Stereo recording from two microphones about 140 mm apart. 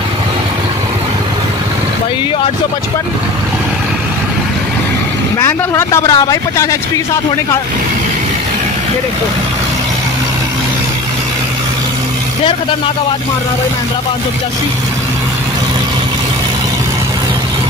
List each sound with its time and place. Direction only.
5.4 s speech: 20° left (ahead or behind)